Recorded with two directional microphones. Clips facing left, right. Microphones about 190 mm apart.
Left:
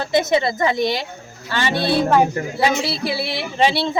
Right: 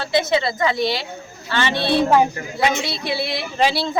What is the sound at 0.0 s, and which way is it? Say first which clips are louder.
Speech: left 2 dB; 20° left (ahead or behind).